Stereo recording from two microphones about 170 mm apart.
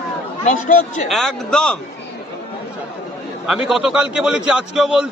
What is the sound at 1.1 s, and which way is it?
Speech, 5° left (ahead or behind).